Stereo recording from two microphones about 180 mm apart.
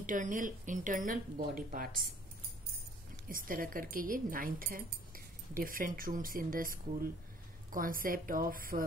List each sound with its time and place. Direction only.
0.0 s speech: 45° right (ahead or behind)
3.3 s speech: 50° right (ahead or behind)